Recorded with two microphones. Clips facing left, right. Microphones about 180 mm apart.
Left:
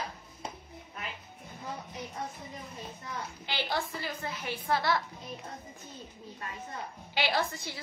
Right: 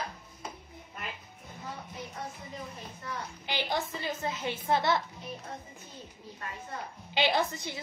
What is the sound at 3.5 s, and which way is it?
A woman's voice, 20° right (ahead or behind).